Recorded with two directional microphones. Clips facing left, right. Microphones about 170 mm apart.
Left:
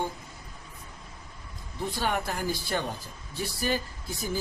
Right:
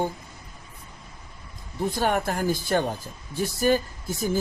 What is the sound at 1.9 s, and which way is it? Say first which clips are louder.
Speech: right 5 dB; 45° right (ahead or behind).